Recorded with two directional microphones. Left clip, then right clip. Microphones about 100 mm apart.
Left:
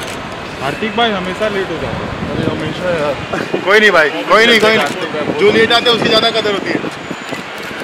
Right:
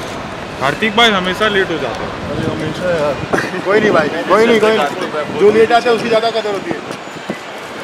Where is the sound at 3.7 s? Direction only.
60° left (ahead or behind).